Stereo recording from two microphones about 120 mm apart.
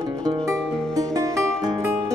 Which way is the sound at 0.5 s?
5° left (ahead or behind).